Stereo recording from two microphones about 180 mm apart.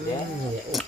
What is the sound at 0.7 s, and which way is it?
Stir, centre (ahead or behind).